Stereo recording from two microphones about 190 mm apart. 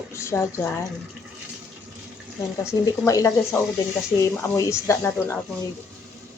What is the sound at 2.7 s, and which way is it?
Speech, 20° left (ahead or behind).